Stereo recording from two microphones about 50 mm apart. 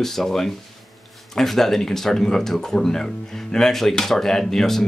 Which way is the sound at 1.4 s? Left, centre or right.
Centre.